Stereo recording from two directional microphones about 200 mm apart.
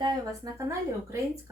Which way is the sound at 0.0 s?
20° right (ahead or behind).